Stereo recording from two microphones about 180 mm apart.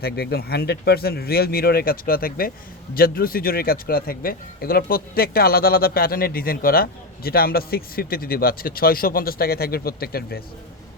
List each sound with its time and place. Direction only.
0.0 s a man's voice: 60° left (ahead or behind)